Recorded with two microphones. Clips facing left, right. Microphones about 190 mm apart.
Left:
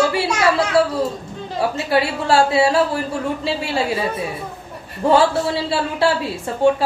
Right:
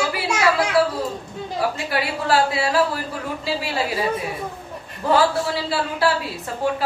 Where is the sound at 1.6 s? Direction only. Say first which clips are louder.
Left 5 dB; 25° left (ahead or behind).